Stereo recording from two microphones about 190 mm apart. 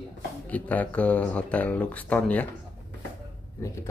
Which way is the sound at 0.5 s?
10° left (ahead or behind).